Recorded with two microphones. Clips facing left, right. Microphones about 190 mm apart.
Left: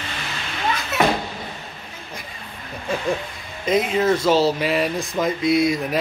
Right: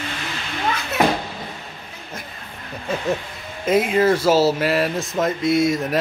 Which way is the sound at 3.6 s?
5° right (ahead or behind).